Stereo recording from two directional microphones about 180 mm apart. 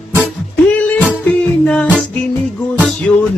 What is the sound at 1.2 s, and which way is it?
Music, 5° left (ahead or behind).